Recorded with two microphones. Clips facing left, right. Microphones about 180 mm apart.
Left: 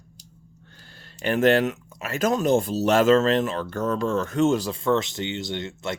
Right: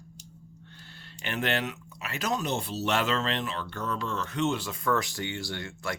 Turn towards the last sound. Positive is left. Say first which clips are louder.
# left 5 dB
turn(degrees=20)  # may be behind; listen again after turning